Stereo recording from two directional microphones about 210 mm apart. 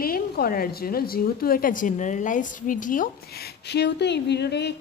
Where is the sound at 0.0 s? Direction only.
45° left (ahead or behind).